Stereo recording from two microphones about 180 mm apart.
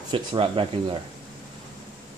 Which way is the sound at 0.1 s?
30° right (ahead or behind).